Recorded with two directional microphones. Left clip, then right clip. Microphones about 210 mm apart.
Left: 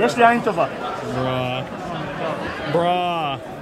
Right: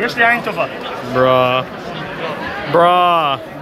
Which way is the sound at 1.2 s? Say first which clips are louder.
Right 13 dB; 5° left (ahead or behind).